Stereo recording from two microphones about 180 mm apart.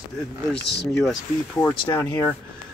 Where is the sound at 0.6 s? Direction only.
70° left (ahead or behind).